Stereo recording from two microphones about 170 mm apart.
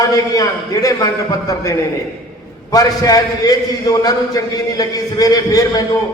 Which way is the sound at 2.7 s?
20° left (ahead or behind).